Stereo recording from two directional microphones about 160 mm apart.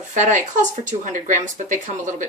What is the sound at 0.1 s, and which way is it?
A woman's voice, 50° right (ahead or behind).